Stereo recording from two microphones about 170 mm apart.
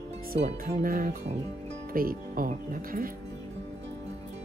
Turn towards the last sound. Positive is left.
turn(degrees=-55)  # may be behind; listen again after turning